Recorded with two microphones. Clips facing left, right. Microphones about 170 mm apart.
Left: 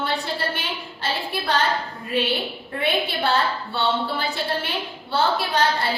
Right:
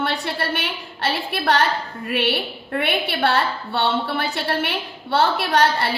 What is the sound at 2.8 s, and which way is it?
A woman's voice, 65° right (ahead or behind).